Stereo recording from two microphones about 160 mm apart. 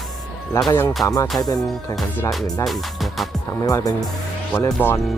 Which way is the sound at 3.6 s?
20° left (ahead or behind).